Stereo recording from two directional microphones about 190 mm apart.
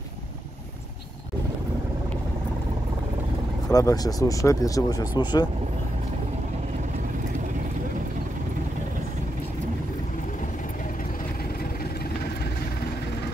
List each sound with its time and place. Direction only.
3.6 s speech: 20° left (ahead or behind)